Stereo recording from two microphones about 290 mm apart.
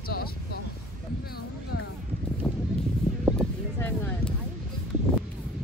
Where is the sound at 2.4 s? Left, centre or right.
Centre.